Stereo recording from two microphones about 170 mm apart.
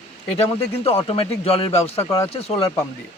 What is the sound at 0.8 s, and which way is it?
Speech, 35° left (ahead or behind).